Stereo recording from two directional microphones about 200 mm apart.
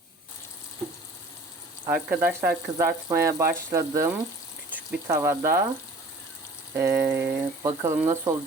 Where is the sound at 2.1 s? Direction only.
10° right (ahead or behind).